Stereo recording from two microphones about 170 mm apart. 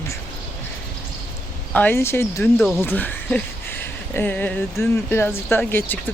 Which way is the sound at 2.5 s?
Centre (ahead or behind).